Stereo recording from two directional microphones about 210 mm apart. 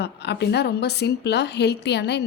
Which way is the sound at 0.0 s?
55° left (ahead or behind).